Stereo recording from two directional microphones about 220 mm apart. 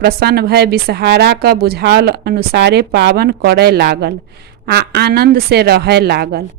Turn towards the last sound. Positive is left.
turn(degrees=-45)  # may be behind; listen again after turning